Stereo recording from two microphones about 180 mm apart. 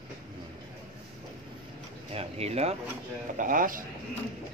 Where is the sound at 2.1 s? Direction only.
35° right (ahead or behind).